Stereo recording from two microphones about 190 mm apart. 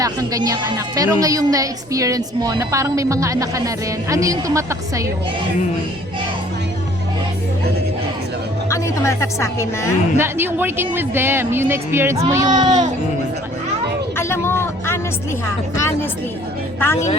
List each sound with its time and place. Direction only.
0.0 s a woman's voice: 20° right (ahead or behind)
8.7 s speech: 15° left (ahead or behind)
10.2 s a woman's voice: 10° right (ahead or behind)
14.2 s speech: 15° left (ahead or behind)